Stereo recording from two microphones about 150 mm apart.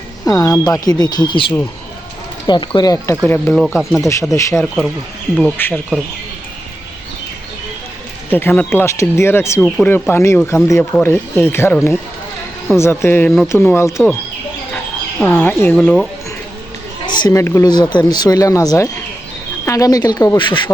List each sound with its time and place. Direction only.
0.3 s speech: 25° left (ahead or behind)
3.2 s speech: 15° left (ahead or behind)
3.5 s speech: centre (ahead or behind)
4.0 s speech: 20° left (ahead or behind)
4.6 s speech: centre (ahead or behind)
5.5 s speech: 15° left (ahead or behind)
8.3 s speech: 15° left (ahead or behind)
9.6 s speech: 5° left (ahead or behind)
12.8 s speech: 15° left (ahead or behind)
15.2 s speech: 15° left (ahead or behind)
17.1 s speech: 25° left (ahead or behind)
20.4 s speech: 30° left (ahead or behind)